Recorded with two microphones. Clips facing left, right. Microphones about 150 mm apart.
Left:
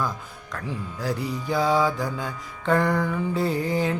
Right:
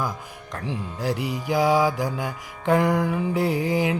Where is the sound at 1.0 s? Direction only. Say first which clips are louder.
Right 2 dB; 15° right (ahead or behind).